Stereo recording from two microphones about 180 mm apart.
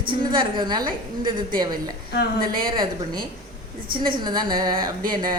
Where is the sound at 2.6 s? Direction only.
25° right (ahead or behind).